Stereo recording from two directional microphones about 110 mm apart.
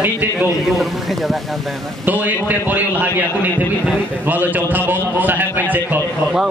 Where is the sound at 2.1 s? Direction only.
15° right (ahead or behind).